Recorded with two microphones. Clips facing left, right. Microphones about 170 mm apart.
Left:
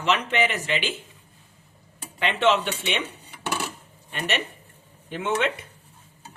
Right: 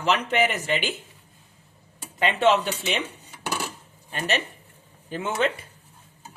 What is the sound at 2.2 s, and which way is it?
Speech, 40° right (ahead or behind).